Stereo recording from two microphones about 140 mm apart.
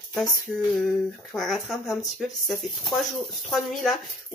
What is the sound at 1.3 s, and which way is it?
Speech, centre (ahead or behind).